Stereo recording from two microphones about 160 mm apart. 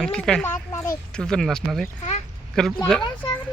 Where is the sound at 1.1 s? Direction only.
5° left (ahead or behind).